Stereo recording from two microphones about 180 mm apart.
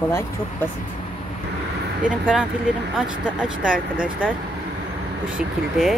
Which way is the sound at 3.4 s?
5° right (ahead or behind).